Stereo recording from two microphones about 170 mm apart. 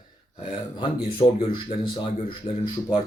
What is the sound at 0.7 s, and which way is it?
Speech, 30° left (ahead or behind).